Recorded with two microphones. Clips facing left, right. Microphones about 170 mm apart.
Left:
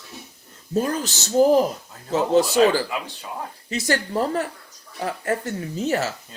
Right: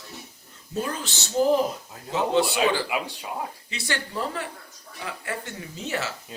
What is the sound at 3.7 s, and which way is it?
Speech, 40° left (ahead or behind).